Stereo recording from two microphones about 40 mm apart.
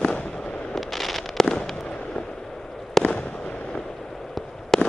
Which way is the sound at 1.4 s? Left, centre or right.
Left.